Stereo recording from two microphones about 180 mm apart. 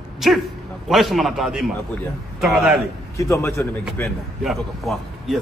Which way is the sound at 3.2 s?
15° left (ahead or behind).